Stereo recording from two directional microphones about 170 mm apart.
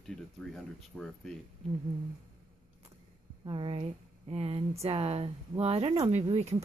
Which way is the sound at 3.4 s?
30° right (ahead or behind).